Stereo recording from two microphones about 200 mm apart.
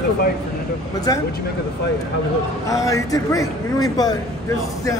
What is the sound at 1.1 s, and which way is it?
Speech, 20° left (ahead or behind).